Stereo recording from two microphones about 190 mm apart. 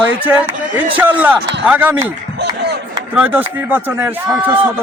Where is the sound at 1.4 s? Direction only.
65° right (ahead or behind).